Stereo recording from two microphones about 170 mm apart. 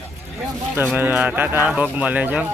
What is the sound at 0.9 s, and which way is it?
Speech, 10° right (ahead or behind).